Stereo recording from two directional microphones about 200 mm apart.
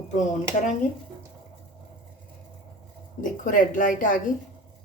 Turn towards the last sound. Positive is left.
turn(degrees=40)  # may be behind; listen again after turning